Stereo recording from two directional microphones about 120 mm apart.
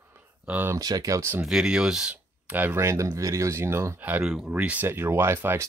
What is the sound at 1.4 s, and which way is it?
Speech, 5° right (ahead or behind).